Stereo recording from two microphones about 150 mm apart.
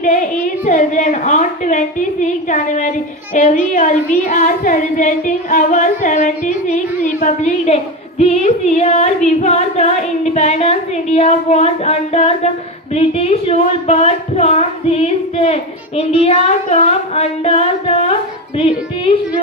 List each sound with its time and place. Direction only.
0.0 s a woman's voice: 55° left (ahead or behind)
3.3 s child singing: 60° left (ahead or behind); by 18.1 s 40° left (ahead or behind)